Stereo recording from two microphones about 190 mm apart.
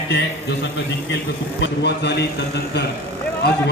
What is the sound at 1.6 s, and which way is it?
A man's voice, 65° left (ahead or behind).